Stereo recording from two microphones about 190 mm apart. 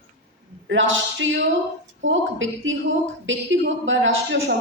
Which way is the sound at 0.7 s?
85° right.